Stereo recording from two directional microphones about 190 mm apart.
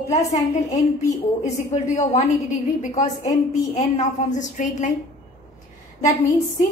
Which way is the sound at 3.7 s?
40° left (ahead or behind).